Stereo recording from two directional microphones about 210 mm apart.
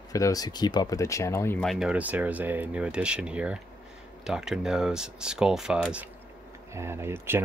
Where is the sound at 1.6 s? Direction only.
Centre (ahead or behind).